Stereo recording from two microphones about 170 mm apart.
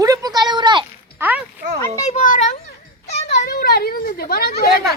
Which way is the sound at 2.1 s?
45° left (ahead or behind).